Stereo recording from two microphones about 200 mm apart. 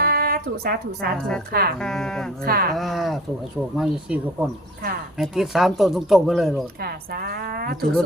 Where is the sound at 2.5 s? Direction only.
50° right (ahead or behind).